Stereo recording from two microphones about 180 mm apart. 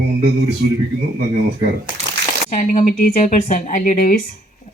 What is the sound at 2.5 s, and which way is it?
Speech, 45° left (ahead or behind).